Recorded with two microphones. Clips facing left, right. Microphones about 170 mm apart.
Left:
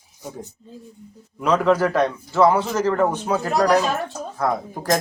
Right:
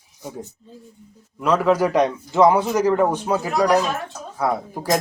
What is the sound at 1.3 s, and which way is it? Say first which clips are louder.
Speech: even; centre (ahead or behind).